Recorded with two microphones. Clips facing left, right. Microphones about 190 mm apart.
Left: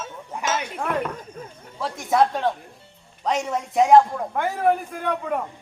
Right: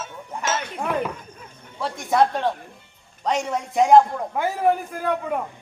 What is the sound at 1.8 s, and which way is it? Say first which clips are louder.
A man's voice: even; centre (ahead or behind).